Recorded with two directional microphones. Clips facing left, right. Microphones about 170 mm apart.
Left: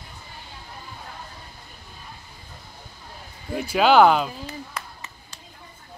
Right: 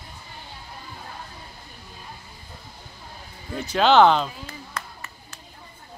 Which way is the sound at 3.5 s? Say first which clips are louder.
Left 1 dB; 10° left (ahead or behind).